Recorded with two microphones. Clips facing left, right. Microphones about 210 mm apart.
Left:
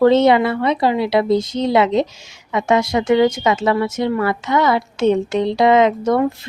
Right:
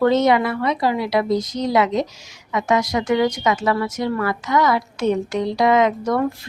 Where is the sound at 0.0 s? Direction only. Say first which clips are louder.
Left 4 dB; 30° left (ahead or behind).